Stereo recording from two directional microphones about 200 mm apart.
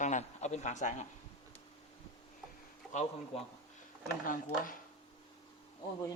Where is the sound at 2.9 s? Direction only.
35° left (ahead or behind).